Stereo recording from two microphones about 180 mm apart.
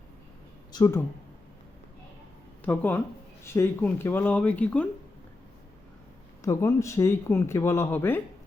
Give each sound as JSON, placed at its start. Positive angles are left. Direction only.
{"t": 0.7, "sound": "speech", "side_deg": 20}
{"t": 2.6, "sound": "speech", "side_deg": 10}
{"t": 6.4, "sound": "speech", "side_deg": 15}